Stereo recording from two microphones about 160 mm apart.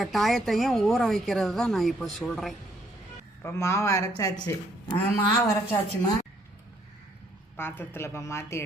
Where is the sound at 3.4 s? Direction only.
15° left (ahead or behind).